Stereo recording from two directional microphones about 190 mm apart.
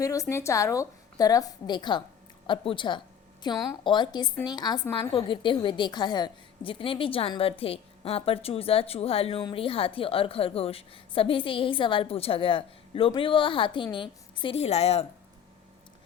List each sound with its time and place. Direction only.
0.0 s a woman's voice: 15° left (ahead or behind); by 15.0 s 35° left (ahead or behind)